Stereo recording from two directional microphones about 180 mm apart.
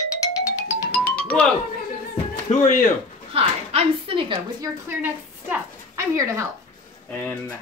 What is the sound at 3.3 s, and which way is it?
Speech, 30° right (ahead or behind).